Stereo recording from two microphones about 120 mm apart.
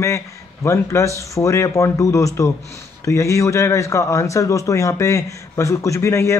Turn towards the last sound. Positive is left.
turn(degrees=25)  # may be behind; listen again after turning